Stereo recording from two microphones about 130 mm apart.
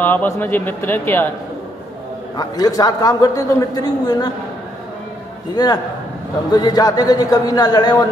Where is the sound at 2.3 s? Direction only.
30° left (ahead or behind).